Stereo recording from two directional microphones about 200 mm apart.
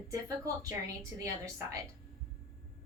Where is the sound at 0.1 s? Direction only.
15° right (ahead or behind).